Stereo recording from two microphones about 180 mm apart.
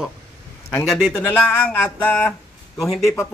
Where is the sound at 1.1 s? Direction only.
20° left (ahead or behind).